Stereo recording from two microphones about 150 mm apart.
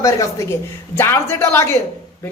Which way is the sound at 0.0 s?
20° left (ahead or behind).